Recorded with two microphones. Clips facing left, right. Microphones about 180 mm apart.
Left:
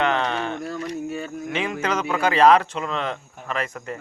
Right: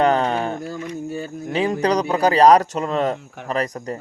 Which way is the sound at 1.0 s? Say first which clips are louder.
Right 1 dB; 35° right (ahead or behind).